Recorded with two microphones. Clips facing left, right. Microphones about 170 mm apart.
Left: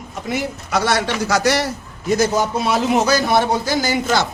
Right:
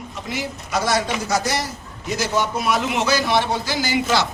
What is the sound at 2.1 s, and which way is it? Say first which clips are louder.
Speech: left 5 dB; 45° left (ahead or behind).